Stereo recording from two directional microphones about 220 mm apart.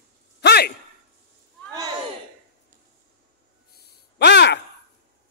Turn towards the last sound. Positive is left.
turn(degrees=50)  # may be behind; listen again after turning